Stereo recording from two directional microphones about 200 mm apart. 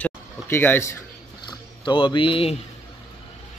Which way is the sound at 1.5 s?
25° left (ahead or behind).